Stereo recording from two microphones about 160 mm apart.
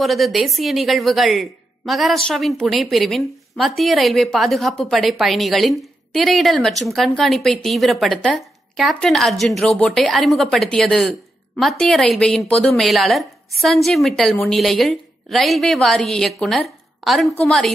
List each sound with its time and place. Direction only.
0.0 s speech: centre (ahead or behind)